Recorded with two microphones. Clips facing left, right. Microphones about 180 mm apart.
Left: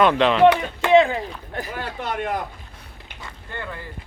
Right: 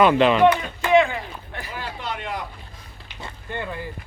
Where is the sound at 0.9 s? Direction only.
35° left (ahead or behind); by 2.4 s 50° left (ahead or behind).